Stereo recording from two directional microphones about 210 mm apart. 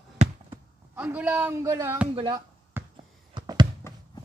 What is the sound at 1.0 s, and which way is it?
Speech, 5° right (ahead or behind).